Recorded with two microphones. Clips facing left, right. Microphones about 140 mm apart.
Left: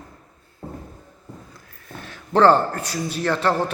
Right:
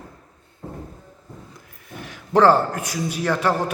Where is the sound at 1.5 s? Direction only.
15° right (ahead or behind).